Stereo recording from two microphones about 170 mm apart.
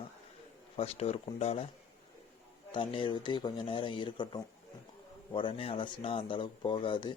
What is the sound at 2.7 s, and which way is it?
Speech, 30° left (ahead or behind).